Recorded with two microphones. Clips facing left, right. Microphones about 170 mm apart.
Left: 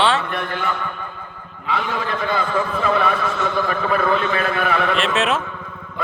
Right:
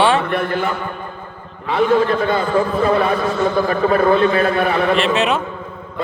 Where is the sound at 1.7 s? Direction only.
30° right (ahead or behind).